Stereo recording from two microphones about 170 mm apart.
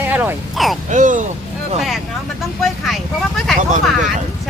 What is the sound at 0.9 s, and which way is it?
Speech, 50° right (ahead or behind).